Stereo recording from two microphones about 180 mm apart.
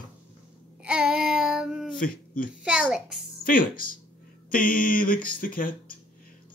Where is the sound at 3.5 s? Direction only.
50° left (ahead or behind).